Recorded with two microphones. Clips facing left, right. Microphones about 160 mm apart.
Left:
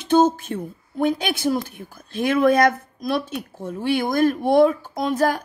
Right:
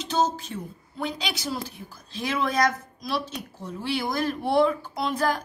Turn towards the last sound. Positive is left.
turn(degrees=45)  # may be behind; listen again after turning